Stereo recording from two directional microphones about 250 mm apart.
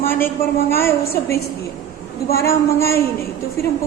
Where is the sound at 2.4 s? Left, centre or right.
Centre.